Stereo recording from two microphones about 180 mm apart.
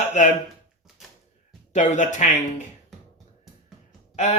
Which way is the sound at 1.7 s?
40° left (ahead or behind).